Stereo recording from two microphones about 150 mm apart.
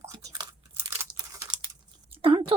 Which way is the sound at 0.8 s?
15° right (ahead or behind).